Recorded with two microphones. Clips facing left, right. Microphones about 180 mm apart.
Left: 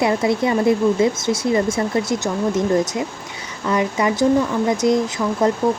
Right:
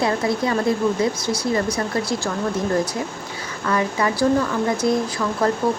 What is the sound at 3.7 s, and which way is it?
Speech, 20° left (ahead or behind).